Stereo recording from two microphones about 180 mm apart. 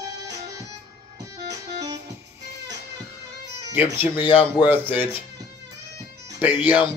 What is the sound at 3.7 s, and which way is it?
Speech, 10° right (ahead or behind).